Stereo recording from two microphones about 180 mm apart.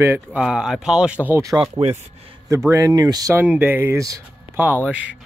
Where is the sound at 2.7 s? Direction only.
20° right (ahead or behind).